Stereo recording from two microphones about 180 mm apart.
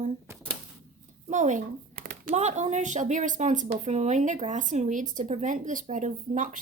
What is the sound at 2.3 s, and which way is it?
Speech, 40° right (ahead or behind).